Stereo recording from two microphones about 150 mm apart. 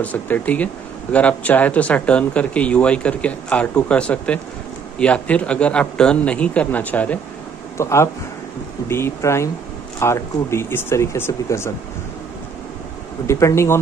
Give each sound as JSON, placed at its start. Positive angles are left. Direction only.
{"t": 0.0, "sound": "speech", "side_deg": 10}
{"t": 13.3, "sound": "speech", "side_deg": 20}